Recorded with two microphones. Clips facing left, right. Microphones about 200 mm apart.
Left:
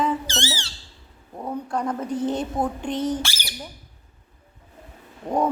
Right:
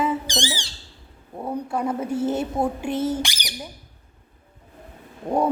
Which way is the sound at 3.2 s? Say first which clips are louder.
Right 3 dB; 15° right (ahead or behind).